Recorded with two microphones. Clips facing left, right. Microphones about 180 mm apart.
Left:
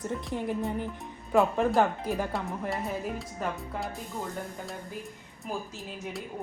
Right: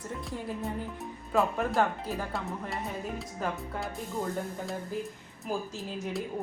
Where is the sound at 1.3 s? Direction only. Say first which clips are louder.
Left 4 dB; 20° left (ahead or behind).